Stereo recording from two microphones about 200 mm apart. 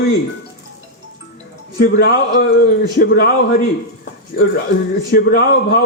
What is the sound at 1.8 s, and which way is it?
A man's voice, 45° left (ahead or behind).